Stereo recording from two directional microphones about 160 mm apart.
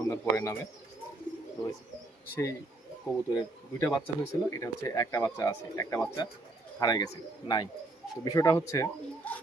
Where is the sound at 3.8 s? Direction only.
15° left (ahead or behind).